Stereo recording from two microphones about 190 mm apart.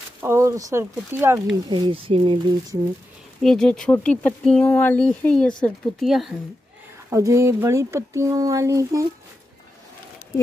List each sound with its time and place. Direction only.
0.2 s speech: 15° right (ahead or behind)
1.7 s speech: 25° right (ahead or behind)
3.4 s speech: 5° left (ahead or behind)
7.1 s speech: 15° right (ahead or behind)